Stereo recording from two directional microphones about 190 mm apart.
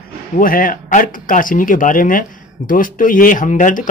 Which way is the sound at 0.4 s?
45° left (ahead or behind).